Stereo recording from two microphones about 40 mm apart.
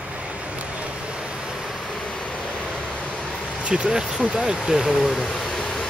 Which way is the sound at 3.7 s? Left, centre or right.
Right.